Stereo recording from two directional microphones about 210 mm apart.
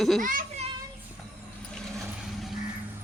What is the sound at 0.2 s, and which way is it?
Children playing, 40° right (ahead or behind).